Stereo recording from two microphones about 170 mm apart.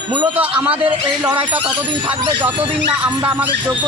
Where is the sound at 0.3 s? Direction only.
10° right (ahead or behind).